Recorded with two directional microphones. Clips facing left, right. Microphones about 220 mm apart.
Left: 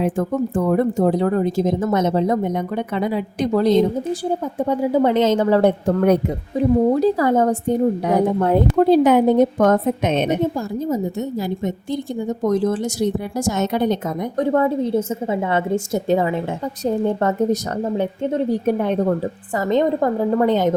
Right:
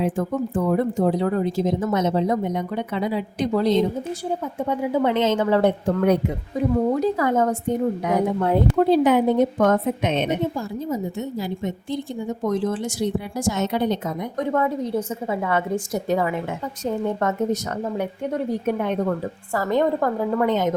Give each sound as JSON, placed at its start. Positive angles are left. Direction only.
{"t": 0.0, "sound": "a woman's voice", "side_deg": 50}
{"t": 12.4, "sound": "a woman's voice", "side_deg": 40}
{"t": 14.3, "sound": "a woman's voice", "side_deg": 35}
{"t": 19.5, "sound": "a woman's voice", "side_deg": 20}